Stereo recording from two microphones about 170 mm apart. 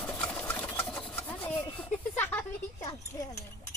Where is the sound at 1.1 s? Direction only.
10° left (ahead or behind).